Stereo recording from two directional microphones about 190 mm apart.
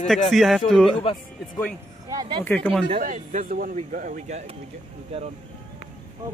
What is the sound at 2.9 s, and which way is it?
A man's voice, 40° right (ahead or behind).